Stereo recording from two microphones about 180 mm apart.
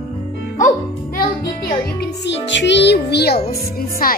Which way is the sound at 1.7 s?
70° left (ahead or behind).